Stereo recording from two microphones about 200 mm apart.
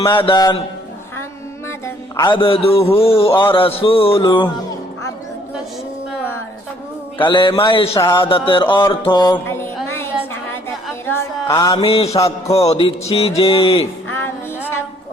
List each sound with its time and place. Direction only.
0.0 s speech: 25° left (ahead or behind)
2.1 s speech: 25° left (ahead or behind)
7.2 s speech: 25° left (ahead or behind)
8.9 s mantra: 25° left (ahead or behind)
9.8 s music: 10° left (ahead or behind)
11.8 s speech: 30° left (ahead or behind)